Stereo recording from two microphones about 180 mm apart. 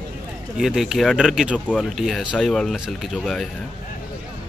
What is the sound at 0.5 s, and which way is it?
Speech, centre (ahead or behind).